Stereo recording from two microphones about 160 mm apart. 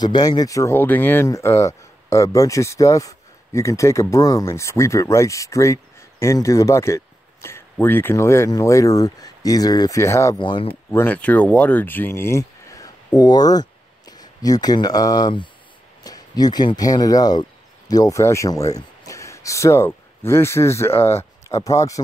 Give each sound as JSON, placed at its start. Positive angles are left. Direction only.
{"t": 0.0, "sound": "speech", "side_deg": 25}
{"t": 10.9, "sound": "speech", "side_deg": 10}